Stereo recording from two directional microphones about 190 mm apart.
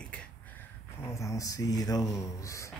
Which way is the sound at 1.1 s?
15° left (ahead or behind).